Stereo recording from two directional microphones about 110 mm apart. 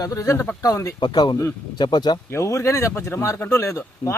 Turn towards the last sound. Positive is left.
turn(degrees=25)  # may be behind; listen again after turning